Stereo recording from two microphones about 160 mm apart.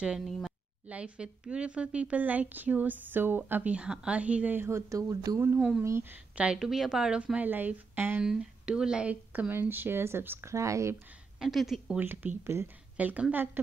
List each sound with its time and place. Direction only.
0.0 s speech: 5° right (ahead or behind); by 5.6 s 20° right (ahead or behind)
5.6 s speech: centre (ahead or behind)
5.9 s speech: 15° right (ahead or behind)
11.3 s speech: centre (ahead or behind)